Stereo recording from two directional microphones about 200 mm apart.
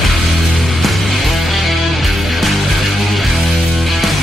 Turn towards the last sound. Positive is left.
turn(degrees=0)  # may be behind; listen again after turning